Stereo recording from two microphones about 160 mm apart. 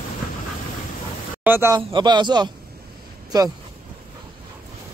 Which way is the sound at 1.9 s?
25° right (ahead or behind).